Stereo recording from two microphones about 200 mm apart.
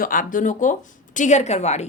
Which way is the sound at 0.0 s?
40° left (ahead or behind).